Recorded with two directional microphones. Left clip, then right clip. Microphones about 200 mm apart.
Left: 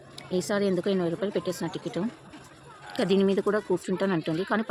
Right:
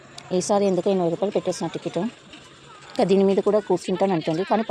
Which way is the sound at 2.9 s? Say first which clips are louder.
Right 6 dB; 10° right (ahead or behind).